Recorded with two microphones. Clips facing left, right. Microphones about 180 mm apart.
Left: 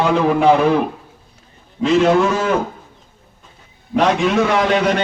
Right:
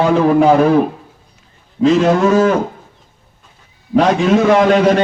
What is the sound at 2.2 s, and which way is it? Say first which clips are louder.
Speech: right 5 dB; 45° right (ahead or behind).